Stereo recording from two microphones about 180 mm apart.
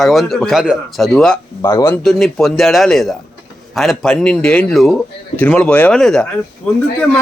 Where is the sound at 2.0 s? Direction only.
Centre (ahead or behind).